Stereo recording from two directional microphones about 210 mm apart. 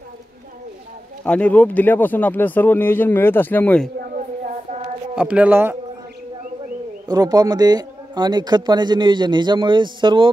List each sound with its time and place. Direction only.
1.2 s speech: 5° left (ahead or behind)
5.1 s speech: 5° right (ahead or behind)
7.1 s a man's voice: 20° right (ahead or behind)